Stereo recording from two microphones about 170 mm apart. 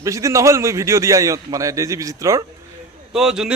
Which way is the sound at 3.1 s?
5° right (ahead or behind).